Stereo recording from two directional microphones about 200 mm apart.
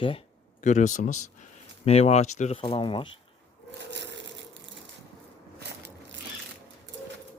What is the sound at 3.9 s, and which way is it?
Crushing, 60° right (ahead or behind).